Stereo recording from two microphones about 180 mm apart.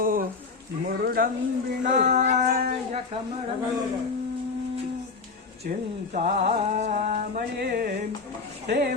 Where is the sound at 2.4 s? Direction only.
55° right (ahead or behind).